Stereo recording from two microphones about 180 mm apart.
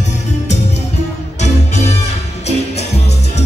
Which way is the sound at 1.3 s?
40° left (ahead or behind).